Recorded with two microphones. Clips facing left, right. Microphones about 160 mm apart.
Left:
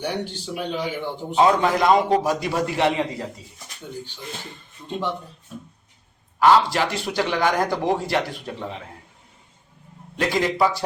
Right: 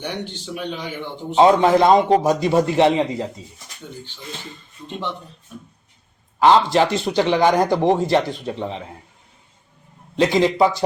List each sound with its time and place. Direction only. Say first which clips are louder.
0.0 s speech: left 1 dB; 10° left (ahead or behind)
1.4 s a man's voice: right 5 dB; 25° right (ahead or behind)
6.4 s a man's voice: right 3 dB; 25° right (ahead or behind)
10.2 s a man's voice: right 5 dB; 20° right (ahead or behind)